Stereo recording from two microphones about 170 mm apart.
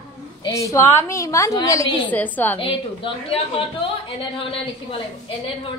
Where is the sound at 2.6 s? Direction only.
30° left (ahead or behind).